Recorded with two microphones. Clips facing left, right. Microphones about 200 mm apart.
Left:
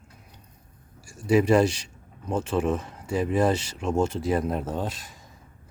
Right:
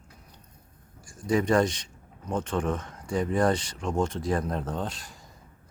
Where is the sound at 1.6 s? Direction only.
30° left (ahead or behind).